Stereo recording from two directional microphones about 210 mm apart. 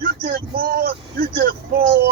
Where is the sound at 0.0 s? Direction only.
45° right (ahead or behind).